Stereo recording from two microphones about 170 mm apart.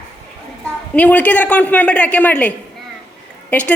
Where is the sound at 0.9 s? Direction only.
10° left (ahead or behind).